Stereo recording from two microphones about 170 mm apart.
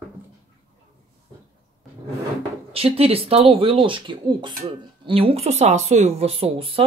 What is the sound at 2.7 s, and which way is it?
Speech, 35° right (ahead or behind).